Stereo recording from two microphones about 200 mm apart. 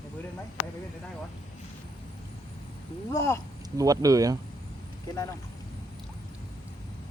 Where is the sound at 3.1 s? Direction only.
15° left (ahead or behind).